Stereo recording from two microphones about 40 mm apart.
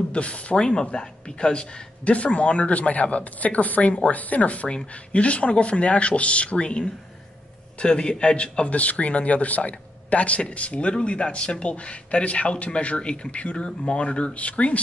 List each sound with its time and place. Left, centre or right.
0.1 s speech: left
8.6 s speech: left